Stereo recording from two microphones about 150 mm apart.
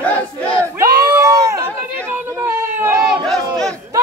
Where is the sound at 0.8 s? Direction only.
20° right (ahead or behind).